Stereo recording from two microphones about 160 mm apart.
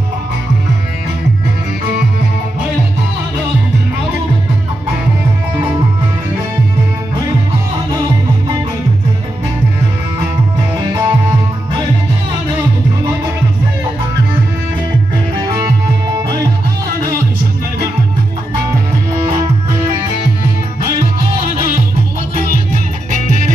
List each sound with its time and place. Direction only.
10.8 s music: 25° right (ahead or behind)
15.4 s music: 20° right (ahead or behind)